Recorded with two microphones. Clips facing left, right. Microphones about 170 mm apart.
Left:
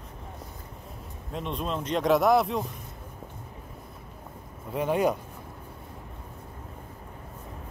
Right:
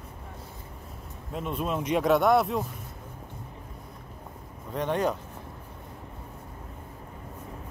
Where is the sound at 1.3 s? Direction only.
5° right (ahead or behind).